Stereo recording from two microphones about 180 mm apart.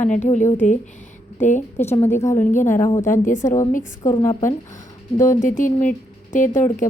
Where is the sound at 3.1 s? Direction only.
45° left (ahead or behind).